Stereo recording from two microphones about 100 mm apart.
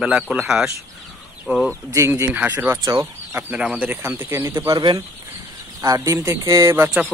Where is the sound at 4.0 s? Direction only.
25° right (ahead or behind).